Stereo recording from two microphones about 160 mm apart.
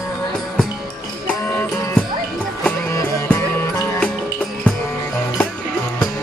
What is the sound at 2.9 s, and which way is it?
Music, 20° left (ahead or behind).